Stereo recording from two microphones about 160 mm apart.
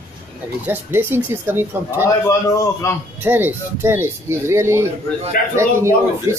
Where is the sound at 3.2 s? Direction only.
10° right (ahead or behind).